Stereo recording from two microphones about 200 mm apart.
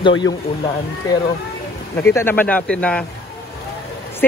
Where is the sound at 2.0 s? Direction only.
10° left (ahead or behind).